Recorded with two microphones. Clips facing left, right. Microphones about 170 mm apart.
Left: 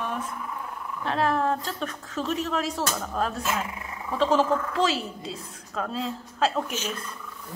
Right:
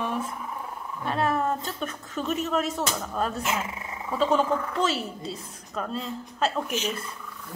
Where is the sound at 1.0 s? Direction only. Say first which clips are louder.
Left 1 dB; centre (ahead or behind).